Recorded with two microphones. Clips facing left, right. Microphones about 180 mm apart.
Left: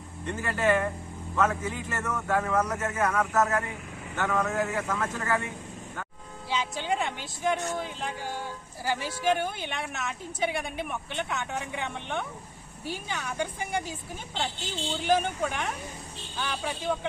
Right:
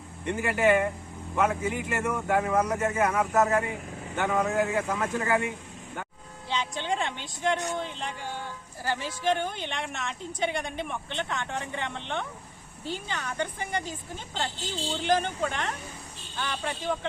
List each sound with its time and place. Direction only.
0.3 s speech: 15° right (ahead or behind)
6.5 s speech: 5° left (ahead or behind)